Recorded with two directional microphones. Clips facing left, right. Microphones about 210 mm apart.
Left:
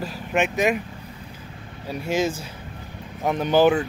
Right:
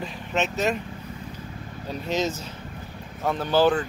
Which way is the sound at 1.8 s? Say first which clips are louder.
Left 3 dB; 10° left (ahead or behind).